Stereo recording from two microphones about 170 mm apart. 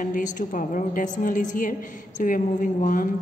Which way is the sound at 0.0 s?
50° left (ahead or behind).